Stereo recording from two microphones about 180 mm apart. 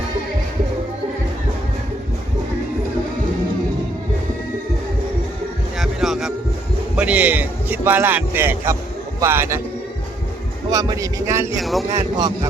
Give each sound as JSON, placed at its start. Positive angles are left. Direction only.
{"t": 5.8, "sound": "a sound", "side_deg": 0}
{"t": 6.9, "sound": "speech", "side_deg": -10}
{"t": 10.7, "sound": "speech", "side_deg": -20}
{"t": 11.6, "sound": "speech", "side_deg": 0}
{"t": 11.9, "sound": "speech", "side_deg": -20}